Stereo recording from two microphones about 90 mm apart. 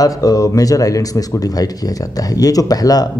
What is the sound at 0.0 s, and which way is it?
Speech, 40° left (ahead or behind).